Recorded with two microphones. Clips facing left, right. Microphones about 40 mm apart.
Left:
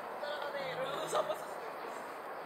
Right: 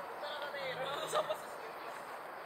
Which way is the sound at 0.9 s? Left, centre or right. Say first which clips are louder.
Left 1 dB; right.